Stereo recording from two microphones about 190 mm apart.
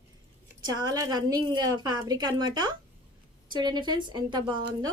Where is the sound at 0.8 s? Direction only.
20° right (ahead or behind).